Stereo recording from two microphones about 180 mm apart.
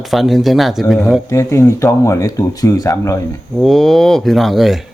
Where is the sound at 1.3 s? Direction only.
15° left (ahead or behind).